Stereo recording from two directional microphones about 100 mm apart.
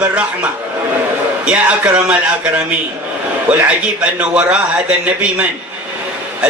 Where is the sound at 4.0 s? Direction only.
10° right (ahead or behind).